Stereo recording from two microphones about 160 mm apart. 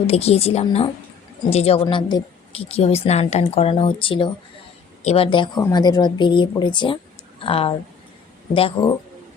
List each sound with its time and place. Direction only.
0.1 s a woman's voice: 40° left (ahead or behind)